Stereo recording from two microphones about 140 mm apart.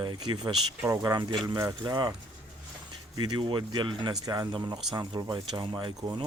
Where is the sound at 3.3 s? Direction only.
35° right (ahead or behind).